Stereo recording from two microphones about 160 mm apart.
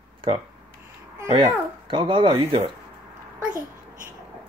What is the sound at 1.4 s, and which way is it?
Speech, 30° right (ahead or behind).